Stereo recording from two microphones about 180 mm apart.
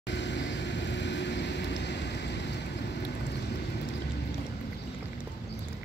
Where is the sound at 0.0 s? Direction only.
80° left.